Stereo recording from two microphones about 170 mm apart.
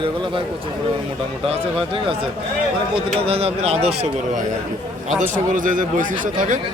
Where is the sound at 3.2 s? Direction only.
35° right (ahead or behind).